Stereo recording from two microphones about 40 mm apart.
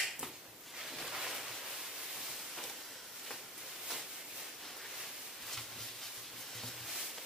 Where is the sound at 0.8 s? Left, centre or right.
Centre.